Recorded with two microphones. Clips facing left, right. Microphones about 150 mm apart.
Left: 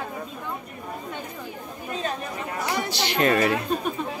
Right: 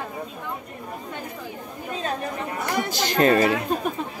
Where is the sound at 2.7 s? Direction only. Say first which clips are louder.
Right 2 dB; 45° right (ahead or behind).